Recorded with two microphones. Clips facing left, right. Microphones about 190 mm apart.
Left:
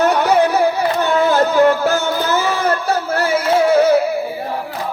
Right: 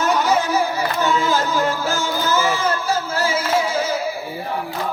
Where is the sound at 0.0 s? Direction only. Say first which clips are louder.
Left 5 dB; 60° left (ahead or behind).